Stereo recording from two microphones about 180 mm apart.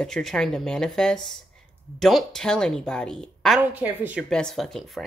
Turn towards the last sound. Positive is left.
turn(degrees=0)  # may be behind; listen again after turning